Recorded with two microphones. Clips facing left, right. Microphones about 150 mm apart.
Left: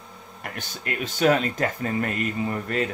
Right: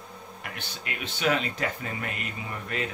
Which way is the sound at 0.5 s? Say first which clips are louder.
Left 8 dB; 40° left (ahead or behind).